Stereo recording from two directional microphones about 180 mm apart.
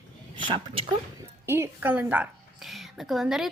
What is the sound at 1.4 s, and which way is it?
A woman's voice, 15° right (ahead or behind).